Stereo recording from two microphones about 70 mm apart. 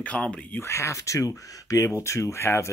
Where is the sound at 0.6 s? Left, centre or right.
Left.